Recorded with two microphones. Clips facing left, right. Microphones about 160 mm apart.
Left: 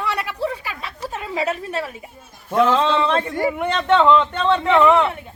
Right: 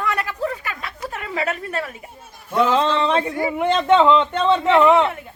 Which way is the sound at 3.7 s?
20° right (ahead or behind).